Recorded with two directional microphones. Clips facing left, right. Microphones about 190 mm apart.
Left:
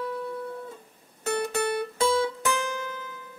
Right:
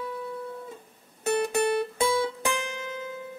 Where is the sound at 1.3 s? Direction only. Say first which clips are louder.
Right 2 dB; 15° right (ahead or behind).